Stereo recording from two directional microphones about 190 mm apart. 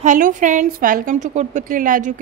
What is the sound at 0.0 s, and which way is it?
A woman's voice, 45° right (ahead or behind).